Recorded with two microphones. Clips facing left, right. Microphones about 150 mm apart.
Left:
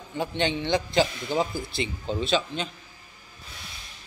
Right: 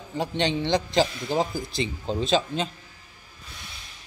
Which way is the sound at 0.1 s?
35° right (ahead or behind).